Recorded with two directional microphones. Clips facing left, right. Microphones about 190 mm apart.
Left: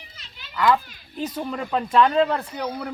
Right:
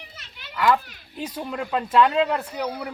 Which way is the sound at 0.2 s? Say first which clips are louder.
Right 3 dB; 70° right (ahead or behind).